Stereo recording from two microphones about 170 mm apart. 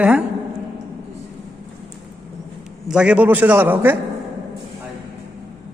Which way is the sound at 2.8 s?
5° right (ahead or behind).